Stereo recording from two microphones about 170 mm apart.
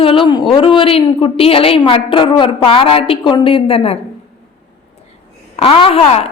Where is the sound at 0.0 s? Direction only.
30° left (ahead or behind).